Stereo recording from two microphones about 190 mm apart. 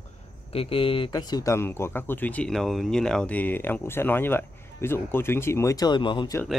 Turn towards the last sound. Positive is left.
turn(degrees=20)  # may be behind; listen again after turning